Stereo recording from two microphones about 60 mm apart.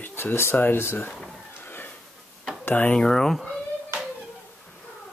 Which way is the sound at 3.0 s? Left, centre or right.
Centre.